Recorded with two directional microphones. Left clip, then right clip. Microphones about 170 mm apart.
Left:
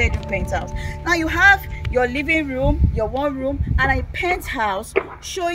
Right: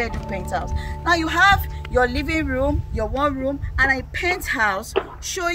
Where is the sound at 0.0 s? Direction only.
5° right (ahead or behind).